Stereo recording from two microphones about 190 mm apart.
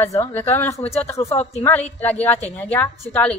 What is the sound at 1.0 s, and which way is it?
A woman's voice, 15° left (ahead or behind).